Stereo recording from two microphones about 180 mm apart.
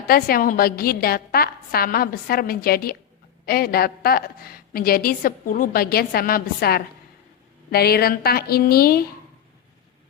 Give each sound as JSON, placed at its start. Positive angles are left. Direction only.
{"t": 0.1, "sound": "a woman's voice", "side_deg": 55}